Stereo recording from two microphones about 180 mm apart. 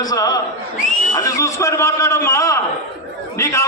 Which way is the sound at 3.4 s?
15° left (ahead or behind).